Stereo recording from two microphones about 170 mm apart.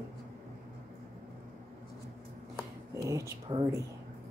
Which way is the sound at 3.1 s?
25° right (ahead or behind).